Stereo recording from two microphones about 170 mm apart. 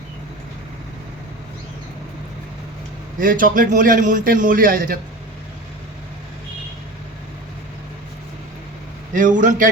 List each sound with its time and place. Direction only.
3.2 s a man's voice: 55° right (ahead or behind)
9.1 s a man's voice: 50° right (ahead or behind)